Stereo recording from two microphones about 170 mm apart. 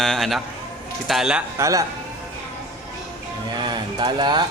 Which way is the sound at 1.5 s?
20° right (ahead or behind).